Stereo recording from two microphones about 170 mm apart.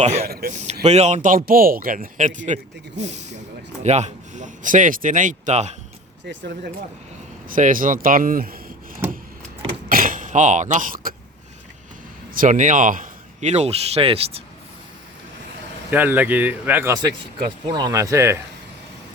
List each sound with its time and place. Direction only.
0.0 s speech: 40° right (ahead or behind)
0.3 s speech: 60° right (ahead or behind)
0.5 s speech: 45° right (ahead or behind)
6.2 s speech: 80° right
7.4 s speech: 50° right (ahead or behind)
9.9 s speech: 55° right (ahead or behind)
12.3 s speech: 50° right (ahead or behind); by 14.3 s 35° right (ahead or behind)
15.9 s speech: 10° right (ahead or behind)
17.7 s speech: 25° right (ahead or behind)